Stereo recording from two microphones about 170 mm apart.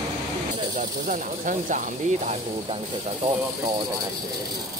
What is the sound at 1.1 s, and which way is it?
Speech, 50° right (ahead or behind).